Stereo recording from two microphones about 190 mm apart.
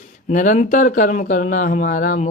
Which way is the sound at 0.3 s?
40° left (ahead or behind).